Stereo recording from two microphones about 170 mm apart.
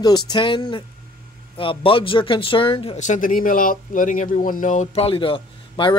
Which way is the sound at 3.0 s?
50° left (ahead or behind).